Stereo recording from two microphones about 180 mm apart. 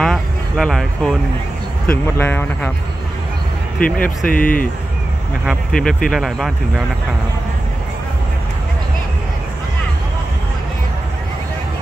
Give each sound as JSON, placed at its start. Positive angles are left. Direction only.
{"t": 0.0, "sound": "speech", "side_deg": 0}
{"t": 4.0, "sound": "speech", "side_deg": 50}
{"t": 5.4, "sound": "speech", "side_deg": 0}